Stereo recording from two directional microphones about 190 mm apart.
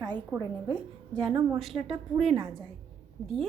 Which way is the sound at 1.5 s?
Centre (ahead or behind).